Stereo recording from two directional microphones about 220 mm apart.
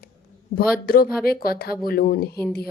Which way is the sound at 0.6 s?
40° left (ahead or behind).